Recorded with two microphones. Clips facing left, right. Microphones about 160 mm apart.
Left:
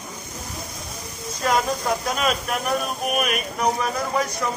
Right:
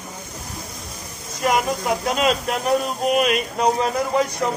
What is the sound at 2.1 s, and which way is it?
Speech, 25° right (ahead or behind).